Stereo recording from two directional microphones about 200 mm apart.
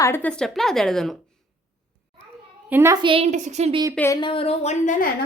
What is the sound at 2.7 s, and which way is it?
Speech, 10° right (ahead or behind).